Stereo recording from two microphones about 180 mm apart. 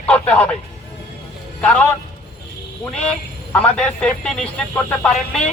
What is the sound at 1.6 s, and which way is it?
Speech, 5° left (ahead or behind).